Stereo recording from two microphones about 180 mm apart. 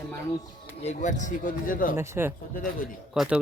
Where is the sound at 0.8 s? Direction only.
40° left (ahead or behind).